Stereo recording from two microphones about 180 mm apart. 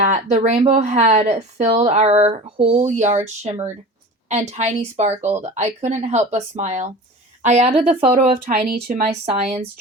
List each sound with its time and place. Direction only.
0.0 s speech: 40° right (ahead or behind)